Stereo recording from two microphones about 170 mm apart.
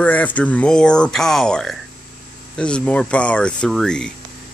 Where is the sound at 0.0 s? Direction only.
10° left (ahead or behind).